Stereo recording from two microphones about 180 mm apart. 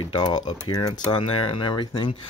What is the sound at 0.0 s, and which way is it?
Speech, 25° left (ahead or behind).